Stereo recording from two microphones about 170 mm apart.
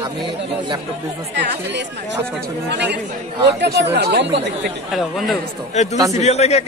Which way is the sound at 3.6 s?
90° right.